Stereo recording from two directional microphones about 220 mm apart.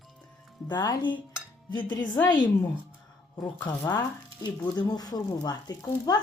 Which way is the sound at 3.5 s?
15° left (ahead or behind).